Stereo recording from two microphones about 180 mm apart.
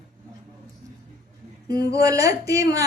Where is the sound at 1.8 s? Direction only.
20° right (ahead or behind).